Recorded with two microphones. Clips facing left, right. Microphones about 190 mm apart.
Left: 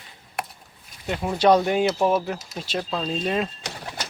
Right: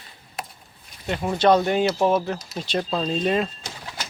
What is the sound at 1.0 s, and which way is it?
Speech, centre (ahead or behind).